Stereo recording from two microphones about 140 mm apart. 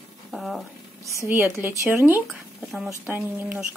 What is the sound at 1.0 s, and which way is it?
A woman's voice, 20° right (ahead or behind).